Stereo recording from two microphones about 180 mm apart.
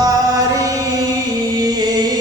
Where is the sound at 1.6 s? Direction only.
20° right (ahead or behind).